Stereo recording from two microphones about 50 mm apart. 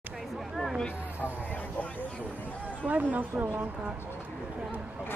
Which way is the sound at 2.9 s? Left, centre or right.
Right.